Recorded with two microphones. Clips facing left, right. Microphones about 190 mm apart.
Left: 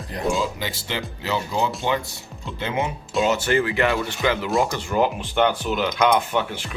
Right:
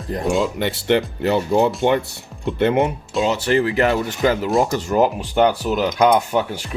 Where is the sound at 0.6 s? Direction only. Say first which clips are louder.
Right 11 dB; 65° right (ahead or behind).